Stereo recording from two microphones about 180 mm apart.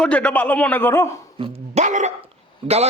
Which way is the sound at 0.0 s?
5° left (ahead or behind).